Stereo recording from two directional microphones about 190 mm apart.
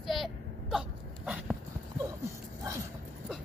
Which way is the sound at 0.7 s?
5° right (ahead or behind).